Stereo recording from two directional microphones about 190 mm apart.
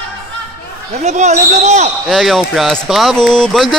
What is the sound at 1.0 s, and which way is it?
Speech, 40° right (ahead or behind).